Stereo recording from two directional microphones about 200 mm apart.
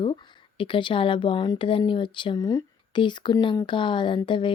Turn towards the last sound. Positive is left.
turn(degrees=25)  # may be behind; listen again after turning